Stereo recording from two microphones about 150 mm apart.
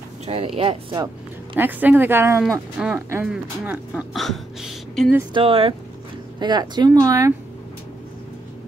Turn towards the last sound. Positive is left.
turn(degrees=-20)  # may be behind; listen again after turning